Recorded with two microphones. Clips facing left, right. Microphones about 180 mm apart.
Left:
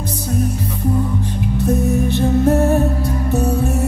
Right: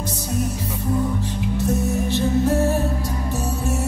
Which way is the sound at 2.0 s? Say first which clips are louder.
Left 3 dB; 55° left (ahead or behind).